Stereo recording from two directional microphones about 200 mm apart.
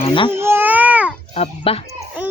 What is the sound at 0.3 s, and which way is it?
Baby cry, 10° right (ahead or behind).